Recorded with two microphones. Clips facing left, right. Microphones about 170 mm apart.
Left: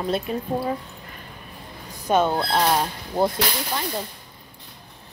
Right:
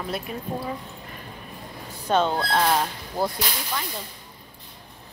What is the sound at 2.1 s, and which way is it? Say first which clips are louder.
Speech: left 2 dB; 10° left (ahead or behind).